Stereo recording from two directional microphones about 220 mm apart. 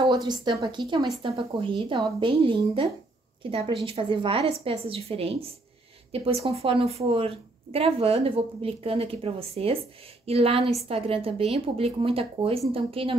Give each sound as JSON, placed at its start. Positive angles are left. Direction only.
{"t": 0.0, "sound": "a woman's voice", "side_deg": -20}